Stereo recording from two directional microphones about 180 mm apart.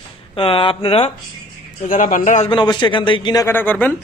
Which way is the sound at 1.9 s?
45° left (ahead or behind).